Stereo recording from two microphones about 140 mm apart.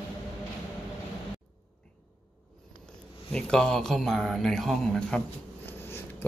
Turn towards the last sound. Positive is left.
turn(degrees=15)  # may be behind; listen again after turning